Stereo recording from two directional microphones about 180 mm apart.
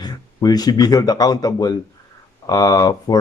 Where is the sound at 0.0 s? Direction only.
20° left (ahead or behind).